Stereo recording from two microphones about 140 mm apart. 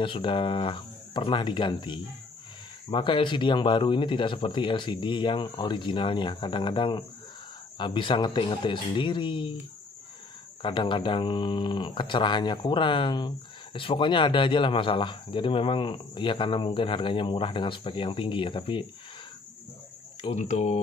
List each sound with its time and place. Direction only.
0.0 s speech: 35° left (ahead or behind)
10.6 s speech: 35° left (ahead or behind)
20.3 s speech: 55° left (ahead or behind)